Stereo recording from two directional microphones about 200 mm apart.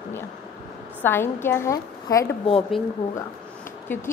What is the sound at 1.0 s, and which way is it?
A woman's voice, 10° left (ahead or behind).